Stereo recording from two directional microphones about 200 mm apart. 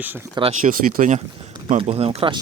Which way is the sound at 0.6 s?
40° right (ahead or behind).